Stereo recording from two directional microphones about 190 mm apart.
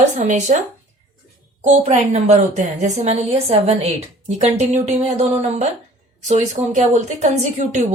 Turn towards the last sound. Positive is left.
turn(degrees=-40)  # may be behind; listen again after turning